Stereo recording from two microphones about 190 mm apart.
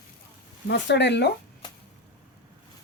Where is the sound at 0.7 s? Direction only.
65° left (ahead or behind).